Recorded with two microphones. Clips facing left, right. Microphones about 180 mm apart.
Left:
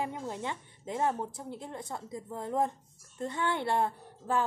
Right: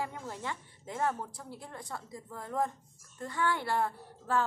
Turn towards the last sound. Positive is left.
turn(degrees=20)  # may be behind; listen again after turning